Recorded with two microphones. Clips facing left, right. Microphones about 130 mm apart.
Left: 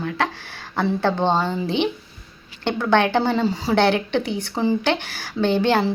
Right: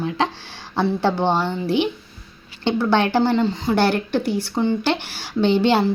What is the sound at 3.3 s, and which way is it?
Speech, 10° left (ahead or behind).